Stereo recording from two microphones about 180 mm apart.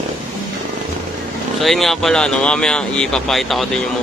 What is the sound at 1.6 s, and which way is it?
Speech, centre (ahead or behind).